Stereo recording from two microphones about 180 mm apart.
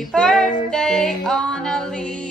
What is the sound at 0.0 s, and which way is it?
Music, centre (ahead or behind).